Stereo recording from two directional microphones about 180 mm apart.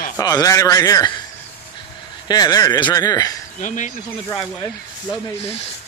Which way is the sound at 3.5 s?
45° left (ahead or behind).